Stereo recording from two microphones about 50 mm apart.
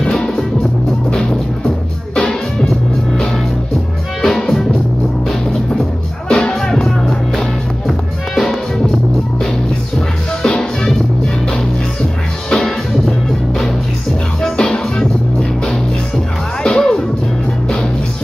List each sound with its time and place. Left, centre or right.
0.0 s music: centre
2.1 s music: centre
4.2 s music: centre
6.2 s music: centre
10.4 s music: centre
12.4 s music: centre
14.4 s music: centre
16.6 s music: centre